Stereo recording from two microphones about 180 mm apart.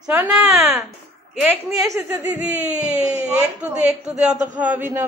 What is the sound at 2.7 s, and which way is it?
A woman's voice, 5° right (ahead or behind).